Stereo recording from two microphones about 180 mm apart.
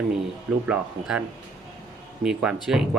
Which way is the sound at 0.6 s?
5° right (ahead or behind).